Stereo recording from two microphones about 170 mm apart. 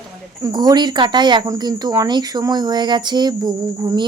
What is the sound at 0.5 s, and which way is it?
Speech, 25° right (ahead or behind).